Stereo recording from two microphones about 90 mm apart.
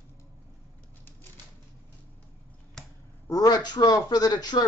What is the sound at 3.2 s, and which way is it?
A man's voice, 40° left (ahead or behind).